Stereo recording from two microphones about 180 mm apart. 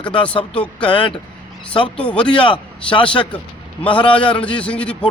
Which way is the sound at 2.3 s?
25° left (ahead or behind).